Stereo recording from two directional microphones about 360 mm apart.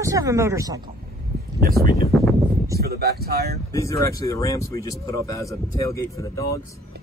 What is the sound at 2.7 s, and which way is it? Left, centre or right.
Speech, right.